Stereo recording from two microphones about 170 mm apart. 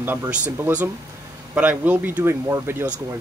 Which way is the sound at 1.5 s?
10° right (ahead or behind).